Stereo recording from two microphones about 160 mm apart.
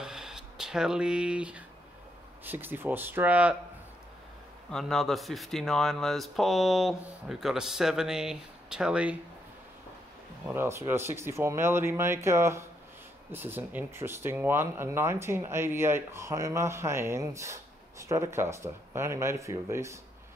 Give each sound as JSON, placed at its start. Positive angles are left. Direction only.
{"t": 0.0, "sound": "a sound", "side_deg": -5}
{"t": 2.4, "sound": "speech", "side_deg": -10}
{"t": 4.6, "sound": "speech", "side_deg": 5}
{"t": 10.4, "sound": "speech", "side_deg": -15}